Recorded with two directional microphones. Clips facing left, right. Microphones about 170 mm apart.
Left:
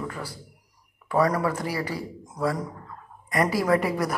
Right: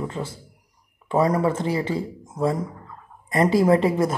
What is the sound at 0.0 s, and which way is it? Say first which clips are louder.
Speech: right 4 dB; 25° right (ahead or behind).